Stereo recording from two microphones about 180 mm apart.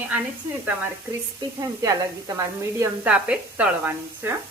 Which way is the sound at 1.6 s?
20° right (ahead or behind).